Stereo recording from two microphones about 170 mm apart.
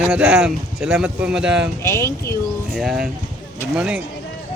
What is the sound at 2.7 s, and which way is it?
Speech, 5° right (ahead or behind).